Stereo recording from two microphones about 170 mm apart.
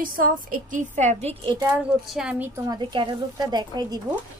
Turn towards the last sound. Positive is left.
turn(degrees=-25)  # may be behind; listen again after turning